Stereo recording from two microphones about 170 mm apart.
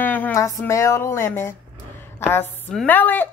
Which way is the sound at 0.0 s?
10° left (ahead or behind).